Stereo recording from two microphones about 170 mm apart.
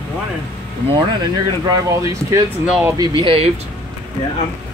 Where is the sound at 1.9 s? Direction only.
20° right (ahead or behind).